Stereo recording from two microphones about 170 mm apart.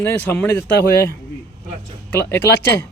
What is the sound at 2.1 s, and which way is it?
Speech, 10° left (ahead or behind).